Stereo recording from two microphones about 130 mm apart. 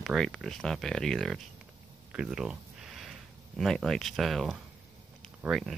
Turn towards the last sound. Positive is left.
turn(degrees=0)  # may be behind; listen again after turning